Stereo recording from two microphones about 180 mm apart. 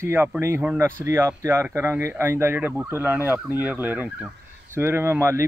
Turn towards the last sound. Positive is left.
turn(degrees=-15)  # may be behind; listen again after turning